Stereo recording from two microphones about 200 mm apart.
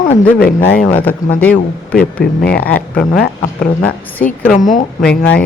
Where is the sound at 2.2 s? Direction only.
50° left (ahead or behind).